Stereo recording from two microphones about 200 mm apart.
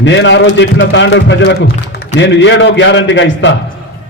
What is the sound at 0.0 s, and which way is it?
A man's voice, 65° left (ahead or behind).